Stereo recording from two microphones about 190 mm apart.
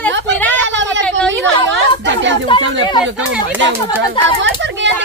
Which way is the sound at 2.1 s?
70° right (ahead or behind).